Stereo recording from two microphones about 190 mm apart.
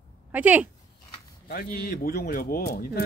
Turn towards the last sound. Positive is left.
turn(degrees=55)  # may be behind; listen again after turning